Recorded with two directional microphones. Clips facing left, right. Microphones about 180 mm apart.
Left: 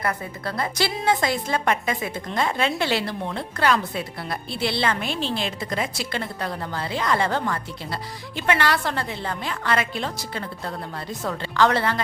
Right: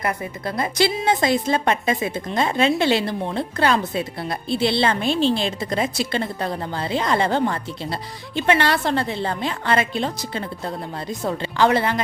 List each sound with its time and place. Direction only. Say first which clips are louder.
0.0 s a woman's voice: right 2 dB; 20° right (ahead or behind)